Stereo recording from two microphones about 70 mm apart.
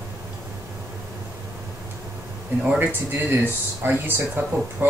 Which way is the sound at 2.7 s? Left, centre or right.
Right.